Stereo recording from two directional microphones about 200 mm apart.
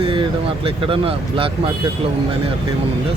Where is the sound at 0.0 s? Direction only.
25° right (ahead or behind).